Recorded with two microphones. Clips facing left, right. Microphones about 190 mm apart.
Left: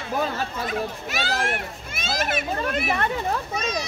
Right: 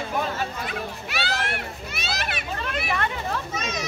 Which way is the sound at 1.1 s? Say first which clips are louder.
Left 1 dB; 40° left (ahead or behind).